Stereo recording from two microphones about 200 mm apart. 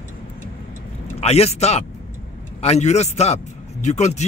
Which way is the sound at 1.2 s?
30° left (ahead or behind).